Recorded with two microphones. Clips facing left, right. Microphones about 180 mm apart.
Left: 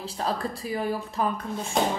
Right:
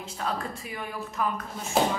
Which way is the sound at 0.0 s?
35° left (ahead or behind).